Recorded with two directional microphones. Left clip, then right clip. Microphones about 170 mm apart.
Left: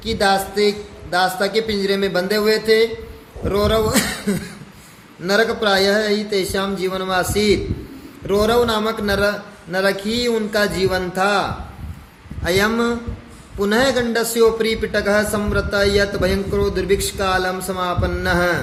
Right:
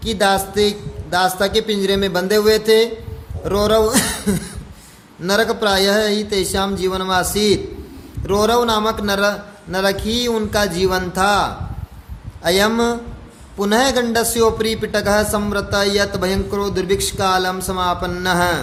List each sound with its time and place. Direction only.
0.0 s a man's voice: 50° right (ahead or behind); by 18.6 s 30° right (ahead or behind)